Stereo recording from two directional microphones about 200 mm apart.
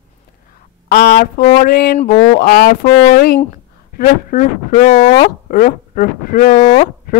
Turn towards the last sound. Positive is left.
turn(degrees=35)  # may be behind; listen again after turning